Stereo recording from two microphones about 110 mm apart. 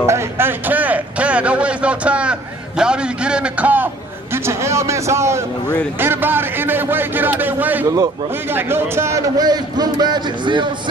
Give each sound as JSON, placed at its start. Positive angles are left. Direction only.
{"t": 0.0, "sound": "a man's voice", "side_deg": -25}
{"t": 9.4, "sound": "a man's voice", "side_deg": -40}